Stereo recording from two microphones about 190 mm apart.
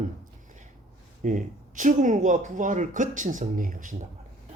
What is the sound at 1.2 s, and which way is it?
Speech, 40° right (ahead or behind).